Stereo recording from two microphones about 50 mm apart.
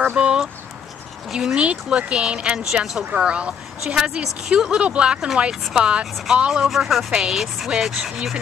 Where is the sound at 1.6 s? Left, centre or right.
Right.